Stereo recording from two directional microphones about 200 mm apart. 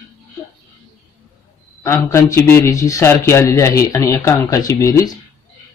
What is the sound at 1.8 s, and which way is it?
Speech, 15° left (ahead or behind).